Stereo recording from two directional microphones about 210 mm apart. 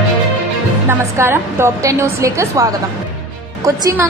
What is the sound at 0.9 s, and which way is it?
A woman's voice, 10° right (ahead or behind).